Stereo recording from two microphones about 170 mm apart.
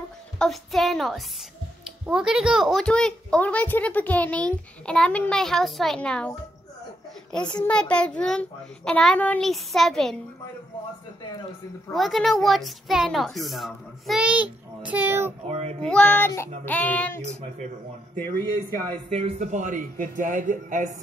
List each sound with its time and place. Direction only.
0.4 s a child's voice: centre (ahead or behind)
7.3 s a child's voice: 5° left (ahead or behind)
11.9 s a child's voice: centre (ahead or behind)
15.4 s speech: 40° right (ahead or behind)
15.8 s child singing: 5° left (ahead or behind)
17.3 s speech: 40° right (ahead or behind)
18.1 s child singing: 15° left (ahead or behind)
19.0 s a man's voice: 35° right (ahead or behind)